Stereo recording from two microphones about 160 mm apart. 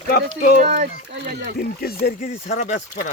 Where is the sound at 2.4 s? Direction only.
45° left (ahead or behind).